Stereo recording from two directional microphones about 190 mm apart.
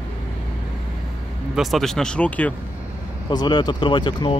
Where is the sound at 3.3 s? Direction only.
25° left (ahead or behind).